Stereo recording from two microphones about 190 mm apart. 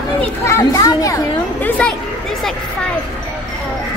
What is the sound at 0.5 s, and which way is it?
A child's voice, 15° left (ahead or behind).